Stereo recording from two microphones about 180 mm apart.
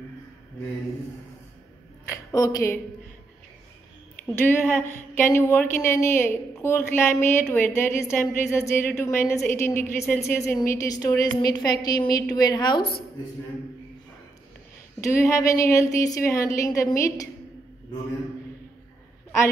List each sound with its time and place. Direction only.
2.0 s a woman's voice: 20° left (ahead or behind)
4.4 s a woman's voice: 10° left (ahead or behind)
15.0 s a woman's voice: 15° left (ahead or behind)